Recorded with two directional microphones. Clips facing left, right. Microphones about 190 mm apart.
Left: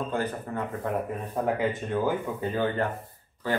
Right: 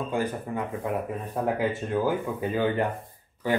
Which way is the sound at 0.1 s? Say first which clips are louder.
Right 2 dB; 10° right (ahead or behind).